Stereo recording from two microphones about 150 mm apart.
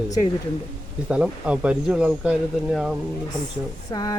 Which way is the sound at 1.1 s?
5° right (ahead or behind).